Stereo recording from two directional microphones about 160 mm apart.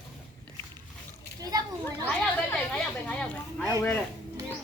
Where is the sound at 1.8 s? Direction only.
10° left (ahead or behind).